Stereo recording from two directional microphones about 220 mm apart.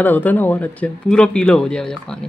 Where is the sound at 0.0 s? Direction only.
10° left (ahead or behind).